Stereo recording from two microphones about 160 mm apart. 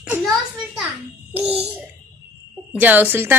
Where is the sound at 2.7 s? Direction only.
10° right (ahead or behind).